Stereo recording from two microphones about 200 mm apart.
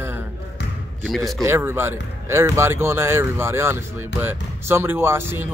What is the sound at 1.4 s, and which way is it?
Speech, 10° right (ahead or behind).